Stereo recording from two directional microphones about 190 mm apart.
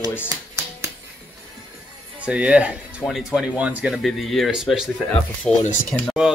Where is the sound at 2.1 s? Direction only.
5° right (ahead or behind).